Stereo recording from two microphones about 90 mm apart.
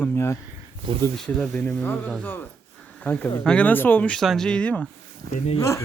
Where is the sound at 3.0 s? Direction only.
15° left (ahead or behind).